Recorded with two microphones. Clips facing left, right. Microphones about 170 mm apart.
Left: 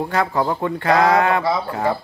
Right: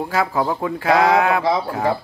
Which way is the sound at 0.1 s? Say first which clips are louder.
Right 1 dB; 5° right (ahead or behind).